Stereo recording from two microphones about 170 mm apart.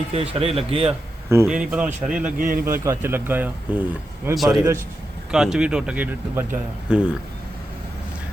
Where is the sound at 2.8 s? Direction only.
15° right (ahead or behind).